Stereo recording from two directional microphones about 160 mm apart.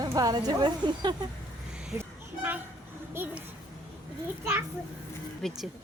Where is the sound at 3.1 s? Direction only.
15° right (ahead or behind).